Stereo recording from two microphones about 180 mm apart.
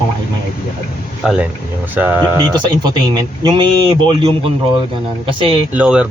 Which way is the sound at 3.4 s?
25° right (ahead or behind).